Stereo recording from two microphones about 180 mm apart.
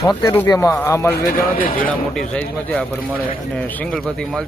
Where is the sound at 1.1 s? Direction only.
55° left (ahead or behind).